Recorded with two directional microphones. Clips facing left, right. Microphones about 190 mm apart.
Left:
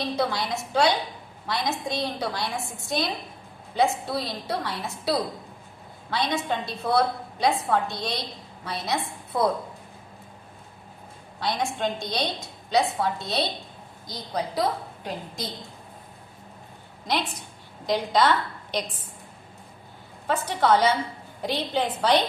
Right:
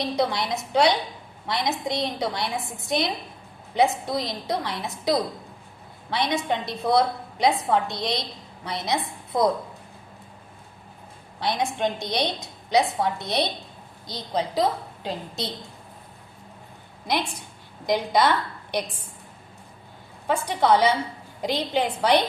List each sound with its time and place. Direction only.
0.2 s a woman's voice: 20° right (ahead or behind)
6.1 s a woman's voice: 20° right (ahead or behind)
11.3 s a woman's voice: 20° right (ahead or behind)
17.1 s a woman's voice: 10° right (ahead or behind)
20.2 s a woman's voice: 15° right (ahead or behind)